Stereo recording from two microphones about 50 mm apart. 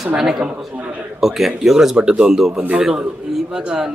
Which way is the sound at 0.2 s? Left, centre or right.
Centre.